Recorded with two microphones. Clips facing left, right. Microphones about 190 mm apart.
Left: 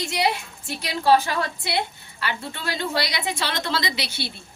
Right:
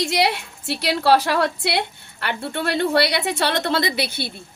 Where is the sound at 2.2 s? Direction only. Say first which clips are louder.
Right 5 dB; 60° right (ahead or behind).